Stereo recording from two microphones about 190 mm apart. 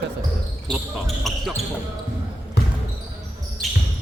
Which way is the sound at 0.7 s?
Centre (ahead or behind).